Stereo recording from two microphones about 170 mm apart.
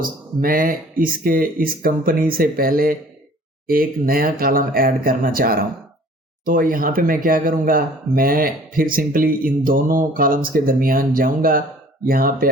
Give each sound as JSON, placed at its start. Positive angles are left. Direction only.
{"t": 0.0, "sound": "speech", "side_deg": -55}